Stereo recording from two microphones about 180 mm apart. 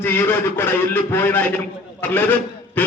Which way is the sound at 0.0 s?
10° left (ahead or behind).